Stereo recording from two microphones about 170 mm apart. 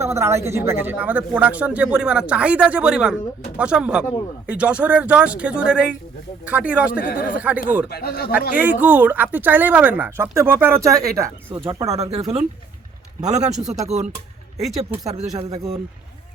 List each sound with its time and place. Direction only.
0.0 s speech: 15° right (ahead or behind)
7.0 s speech: 55° left (ahead or behind)
7.3 s speech: 10° right (ahead or behind)
7.9 s speech: 65° left (ahead or behind)
8.5 s speech: 10° right (ahead or behind)
11.9 s speech: 40° right (ahead or behind)
13.2 s a man's voice: 40° right (ahead or behind)
15.4 s speech: 20° right (ahead or behind)